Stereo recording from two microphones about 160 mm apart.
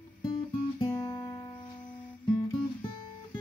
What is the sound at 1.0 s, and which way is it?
Music, 25° left (ahead or behind).